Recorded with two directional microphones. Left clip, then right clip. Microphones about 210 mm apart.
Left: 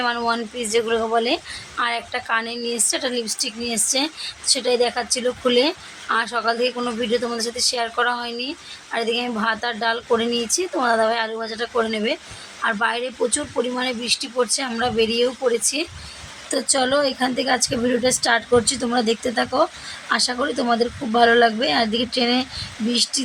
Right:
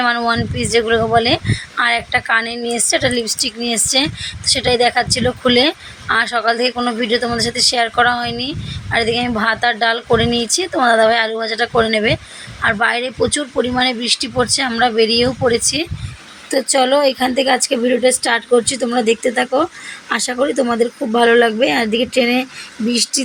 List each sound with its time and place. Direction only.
0.0 s speech: 15° right (ahead or behind)